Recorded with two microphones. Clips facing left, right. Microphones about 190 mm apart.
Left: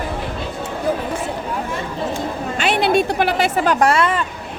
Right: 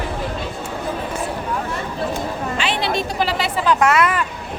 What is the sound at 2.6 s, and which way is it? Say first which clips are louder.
A woman's voice: left 7 dB; 55° left (ahead or behind).